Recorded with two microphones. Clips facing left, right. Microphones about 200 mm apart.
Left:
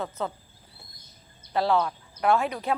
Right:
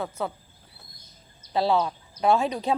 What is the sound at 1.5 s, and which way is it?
Speech, 15° right (ahead or behind).